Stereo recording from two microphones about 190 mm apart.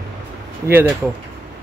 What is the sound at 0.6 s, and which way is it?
Speech, 10° right (ahead or behind).